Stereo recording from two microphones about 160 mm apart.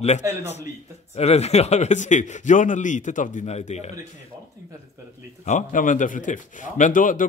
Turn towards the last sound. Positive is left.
turn(degrees=55)  # may be behind; listen again after turning